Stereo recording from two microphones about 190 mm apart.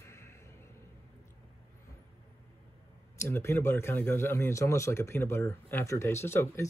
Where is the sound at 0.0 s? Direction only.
15° left (ahead or behind).